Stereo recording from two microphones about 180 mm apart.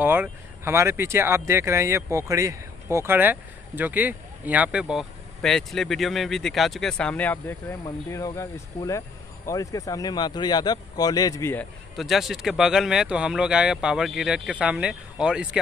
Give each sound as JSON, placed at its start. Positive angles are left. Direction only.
{"t": 0.0, "sound": "speech", "side_deg": -10}
{"t": 12.0, "sound": "speech", "side_deg": 0}